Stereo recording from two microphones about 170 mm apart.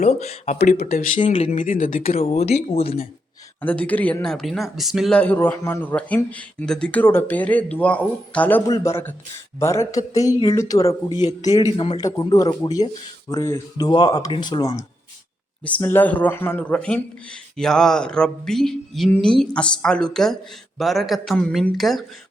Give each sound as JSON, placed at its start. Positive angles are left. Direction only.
{"t": 0.0, "sound": "speech", "side_deg": 40}
{"t": 0.9, "sound": "speech", "side_deg": 55}
{"t": 1.3, "sound": "speech", "side_deg": 40}
{"t": 2.1, "sound": "speech", "side_deg": 40}
{"t": 3.6, "sound": "speech", "side_deg": 10}
{"t": 8.6, "sound": "speech", "side_deg": 20}
{"t": 11.6, "sound": "speech", "side_deg": 35}
{"t": 11.9, "sound": "speech", "side_deg": 20}
{"t": 15.6, "sound": "speech", "side_deg": 10}